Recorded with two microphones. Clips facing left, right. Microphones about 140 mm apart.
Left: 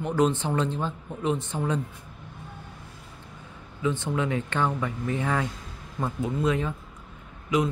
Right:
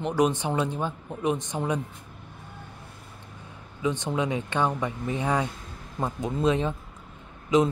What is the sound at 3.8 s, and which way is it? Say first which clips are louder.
A man's voice: even; 15° right (ahead or behind).